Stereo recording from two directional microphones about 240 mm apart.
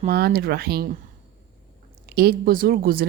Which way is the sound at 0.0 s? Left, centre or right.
Right.